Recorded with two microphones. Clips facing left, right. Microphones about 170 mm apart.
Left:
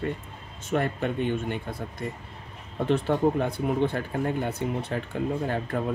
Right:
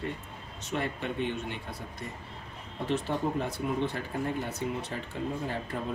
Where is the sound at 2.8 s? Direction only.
55° left (ahead or behind).